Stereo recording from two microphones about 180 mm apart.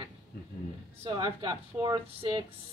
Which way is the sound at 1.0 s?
25° right (ahead or behind).